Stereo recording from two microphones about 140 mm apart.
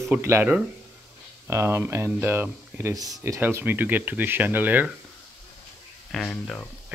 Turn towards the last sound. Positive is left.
turn(degrees=5)  # may be behind; listen again after turning